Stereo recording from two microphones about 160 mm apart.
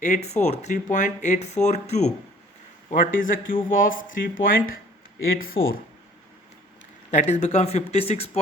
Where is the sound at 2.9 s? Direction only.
55° left (ahead or behind).